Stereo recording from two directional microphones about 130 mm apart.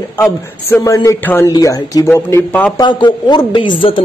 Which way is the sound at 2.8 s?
35° left (ahead or behind).